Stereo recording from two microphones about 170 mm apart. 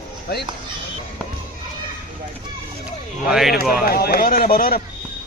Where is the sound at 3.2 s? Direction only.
Centre (ahead or behind).